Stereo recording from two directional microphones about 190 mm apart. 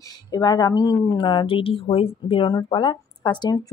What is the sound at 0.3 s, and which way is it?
A woman's voice, 20° left (ahead or behind).